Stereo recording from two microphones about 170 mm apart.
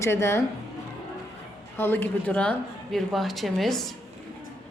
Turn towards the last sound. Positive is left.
turn(degrees=0)  # may be behind; listen again after turning